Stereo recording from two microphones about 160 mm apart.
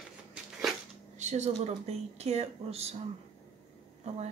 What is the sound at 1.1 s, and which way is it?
Speech, 45° right (ahead or behind).